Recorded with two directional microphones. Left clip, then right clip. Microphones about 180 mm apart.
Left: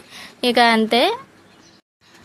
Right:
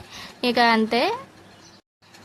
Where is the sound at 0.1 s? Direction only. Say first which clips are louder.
Left 5 dB; 20° left (ahead or behind).